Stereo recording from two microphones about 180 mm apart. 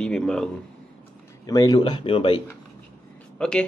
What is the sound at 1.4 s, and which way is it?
Speech, 20° left (ahead or behind).